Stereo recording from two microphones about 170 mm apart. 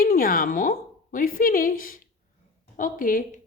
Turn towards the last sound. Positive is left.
turn(degrees=55)  # may be behind; listen again after turning